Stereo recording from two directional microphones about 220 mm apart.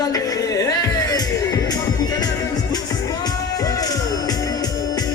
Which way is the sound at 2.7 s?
15° left (ahead or behind).